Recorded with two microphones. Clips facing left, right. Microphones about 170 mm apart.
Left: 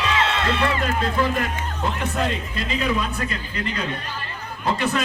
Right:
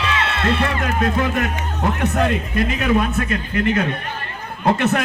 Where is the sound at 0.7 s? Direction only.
65° right (ahead or behind).